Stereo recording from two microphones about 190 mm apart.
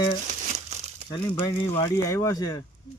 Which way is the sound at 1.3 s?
15° left (ahead or behind).